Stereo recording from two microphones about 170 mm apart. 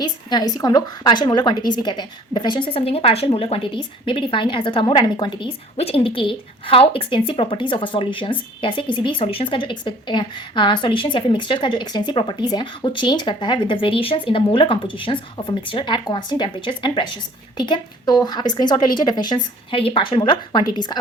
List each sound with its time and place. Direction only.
0.0 s a woman's voice: 25° left (ahead or behind)